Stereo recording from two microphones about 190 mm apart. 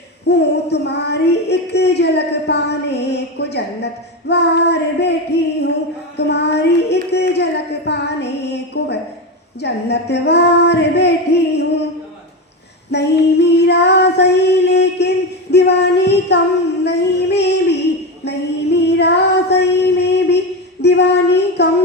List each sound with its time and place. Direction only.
0.3 s child singing: 60° left (ahead or behind)
6.1 s a sound: 60° left (ahead or behind)
9.6 s child singing: 60° left (ahead or behind)
12.9 s female singing: 60° left (ahead or behind)
15.5 s a sound: 60° left (ahead or behind)
18.3 s child singing: 65° left (ahead or behind)